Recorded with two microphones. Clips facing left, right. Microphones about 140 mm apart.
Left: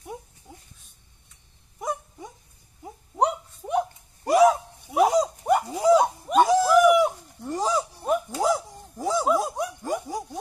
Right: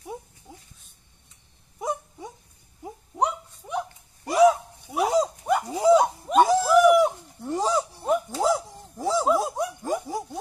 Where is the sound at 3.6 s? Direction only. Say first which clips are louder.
Left 5 dB; 55° left (ahead or behind).